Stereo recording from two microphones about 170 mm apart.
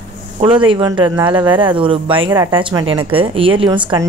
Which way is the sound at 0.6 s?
30° right (ahead or behind).